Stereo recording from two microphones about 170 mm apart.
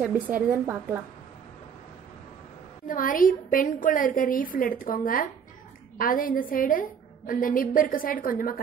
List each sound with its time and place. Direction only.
0.0 s a woman's voice: 10° right (ahead or behind)
2.9 s a woman's voice: 55° left (ahead or behind)